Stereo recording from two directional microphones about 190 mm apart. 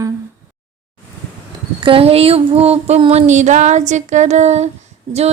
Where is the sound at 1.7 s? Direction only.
30° right (ahead or behind).